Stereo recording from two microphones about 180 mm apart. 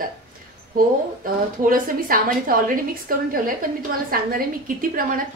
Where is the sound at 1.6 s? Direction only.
50° right (ahead or behind).